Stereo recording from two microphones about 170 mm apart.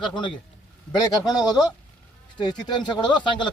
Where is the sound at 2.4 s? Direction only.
25° left (ahead or behind).